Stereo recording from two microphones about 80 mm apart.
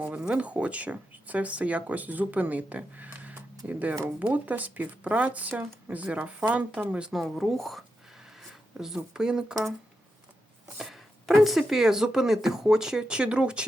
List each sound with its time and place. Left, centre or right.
0.0 s speech: centre
7.1 s speech: centre
8.4 s a sound: centre
9.1 s speech: centre
10.8 s chopping: centre
11.4 s speech: centre